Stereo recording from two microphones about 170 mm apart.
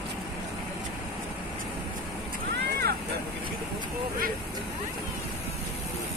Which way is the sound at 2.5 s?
70° right (ahead or behind).